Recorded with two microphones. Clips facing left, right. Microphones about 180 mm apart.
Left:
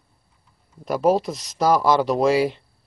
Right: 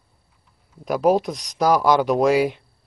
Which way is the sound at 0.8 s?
Centre (ahead or behind).